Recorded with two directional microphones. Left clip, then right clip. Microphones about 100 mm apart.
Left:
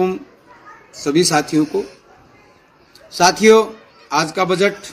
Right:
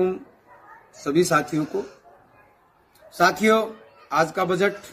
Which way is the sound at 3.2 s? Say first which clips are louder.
Left 8 dB; 50° right (ahead or behind).